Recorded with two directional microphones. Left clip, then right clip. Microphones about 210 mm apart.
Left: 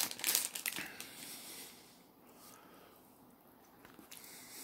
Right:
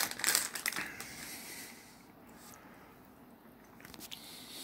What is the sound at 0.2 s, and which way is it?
Crushing, 15° left (ahead or behind).